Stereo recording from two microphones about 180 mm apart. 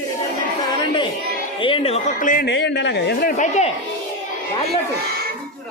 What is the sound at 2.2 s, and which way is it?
Speech, 50° left (ahead or behind).